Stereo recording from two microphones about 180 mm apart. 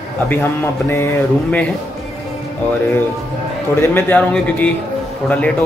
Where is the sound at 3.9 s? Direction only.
10° left (ahead or behind).